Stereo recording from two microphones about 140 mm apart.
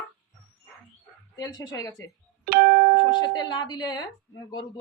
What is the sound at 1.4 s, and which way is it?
Speech, 30° left (ahead or behind).